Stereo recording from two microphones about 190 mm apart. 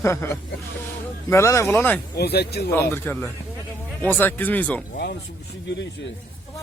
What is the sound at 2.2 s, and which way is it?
Speech, 60° left (ahead or behind).